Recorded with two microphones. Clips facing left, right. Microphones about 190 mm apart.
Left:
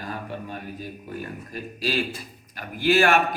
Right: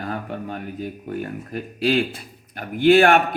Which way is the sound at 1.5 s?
60° right (ahead or behind).